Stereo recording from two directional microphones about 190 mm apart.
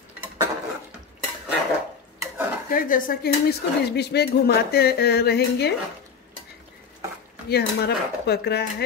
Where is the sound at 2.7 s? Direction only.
50° left (ahead or behind).